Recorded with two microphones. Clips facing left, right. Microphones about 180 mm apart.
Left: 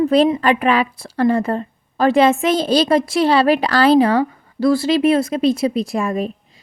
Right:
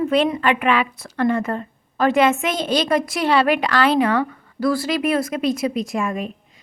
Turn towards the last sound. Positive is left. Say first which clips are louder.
# left 3 dB
turn(degrees=35)  # may be behind; listen again after turning